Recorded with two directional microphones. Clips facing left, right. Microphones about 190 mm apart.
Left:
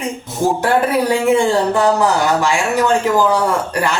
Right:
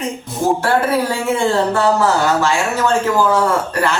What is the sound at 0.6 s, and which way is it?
A woman's voice, 15° left (ahead or behind).